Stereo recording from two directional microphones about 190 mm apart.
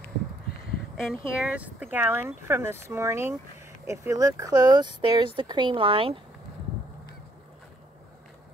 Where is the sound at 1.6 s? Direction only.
10° right (ahead or behind); by 6.1 s 30° right (ahead or behind).